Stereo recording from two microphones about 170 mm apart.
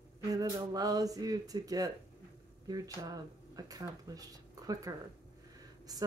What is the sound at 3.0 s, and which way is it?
Speech, 20° right (ahead or behind).